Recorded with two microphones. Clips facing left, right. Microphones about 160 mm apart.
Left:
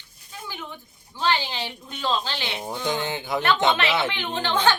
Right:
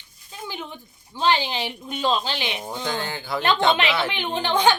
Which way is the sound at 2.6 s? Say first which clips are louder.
Left 1 dB; 15° left (ahead or behind).